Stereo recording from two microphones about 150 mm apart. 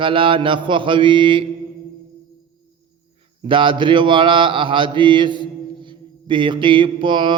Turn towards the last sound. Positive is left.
turn(degrees=-35)  # may be behind; listen again after turning